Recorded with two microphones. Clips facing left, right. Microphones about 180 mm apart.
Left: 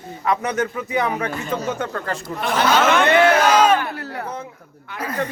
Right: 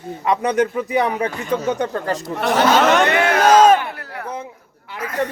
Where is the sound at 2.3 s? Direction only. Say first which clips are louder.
Right 4 dB; 70° right (ahead or behind).